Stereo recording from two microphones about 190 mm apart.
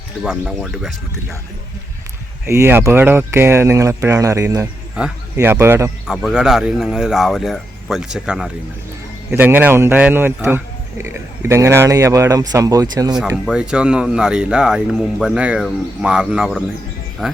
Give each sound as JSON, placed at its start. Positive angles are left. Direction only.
{"t": 0.2, "sound": "speech", "side_deg": -5}
{"t": 2.5, "sound": "a man's voice", "side_deg": -15}
{"t": 13.3, "sound": "speech", "side_deg": -5}